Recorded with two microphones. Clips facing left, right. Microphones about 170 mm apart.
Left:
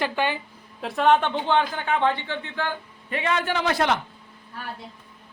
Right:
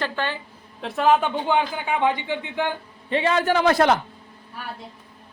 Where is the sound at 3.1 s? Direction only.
30° right (ahead or behind).